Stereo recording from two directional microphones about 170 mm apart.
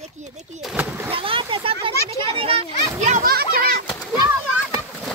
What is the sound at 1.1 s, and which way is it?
Speech, 30° right (ahead or behind).